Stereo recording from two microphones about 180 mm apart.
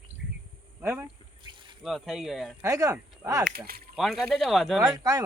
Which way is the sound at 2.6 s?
20° right (ahead or behind).